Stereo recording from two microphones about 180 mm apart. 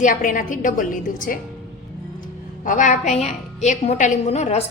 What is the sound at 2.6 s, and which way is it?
A woman's voice, 45° left (ahead or behind).